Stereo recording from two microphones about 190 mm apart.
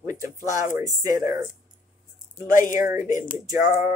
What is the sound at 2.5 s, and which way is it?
Speech, 45° left (ahead or behind).